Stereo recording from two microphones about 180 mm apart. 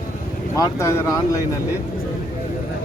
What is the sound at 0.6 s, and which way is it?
Speech, 15° left (ahead or behind).